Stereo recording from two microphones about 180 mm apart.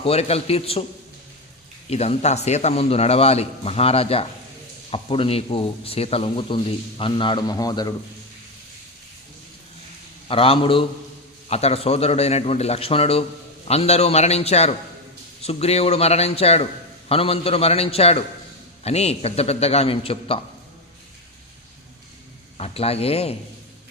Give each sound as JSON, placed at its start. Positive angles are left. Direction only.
{"t": 0.0, "sound": "a man's voice", "side_deg": 35}
{"t": 1.9, "sound": "a man's voice", "side_deg": 35}
{"t": 10.2, "sound": "a man's voice", "side_deg": 30}
{"t": 22.5, "sound": "a man's voice", "side_deg": 35}